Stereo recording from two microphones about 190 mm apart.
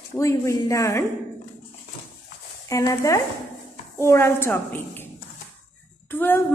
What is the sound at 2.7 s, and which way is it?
A woman's voice, 15° left (ahead or behind).